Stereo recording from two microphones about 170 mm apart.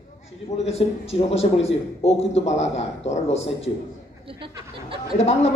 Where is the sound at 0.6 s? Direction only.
35° left (ahead or behind).